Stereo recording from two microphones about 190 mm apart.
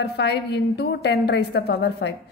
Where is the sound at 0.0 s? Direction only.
60° left (ahead or behind).